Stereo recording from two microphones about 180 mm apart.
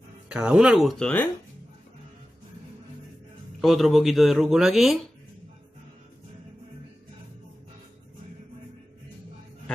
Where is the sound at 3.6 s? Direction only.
Centre (ahead or behind).